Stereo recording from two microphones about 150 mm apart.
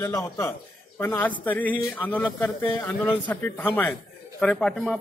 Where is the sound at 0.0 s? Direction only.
20° left (ahead or behind).